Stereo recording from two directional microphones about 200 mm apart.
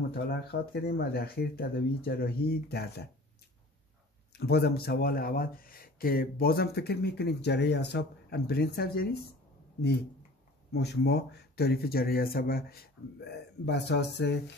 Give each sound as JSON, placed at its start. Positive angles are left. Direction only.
{"t": 0.1, "sound": "speech", "side_deg": 50}
{"t": 4.4, "sound": "speech", "side_deg": 55}